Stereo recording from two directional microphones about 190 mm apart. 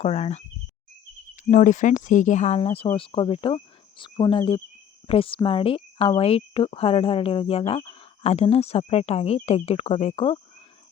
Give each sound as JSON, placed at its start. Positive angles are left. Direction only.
{"t": 0.0, "sound": "speech", "side_deg": 35}
{"t": 1.5, "sound": "speech", "side_deg": 40}